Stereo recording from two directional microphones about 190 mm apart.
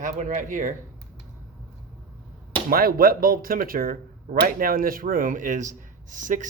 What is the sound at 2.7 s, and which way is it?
Speech, 50° right (ahead or behind).